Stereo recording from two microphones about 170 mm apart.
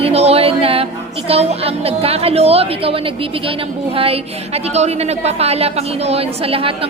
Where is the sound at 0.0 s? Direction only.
35° right (ahead or behind).